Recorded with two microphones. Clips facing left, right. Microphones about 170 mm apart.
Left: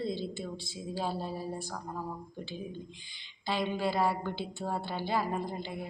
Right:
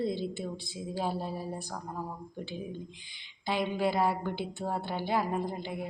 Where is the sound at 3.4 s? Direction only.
15° right (ahead or behind).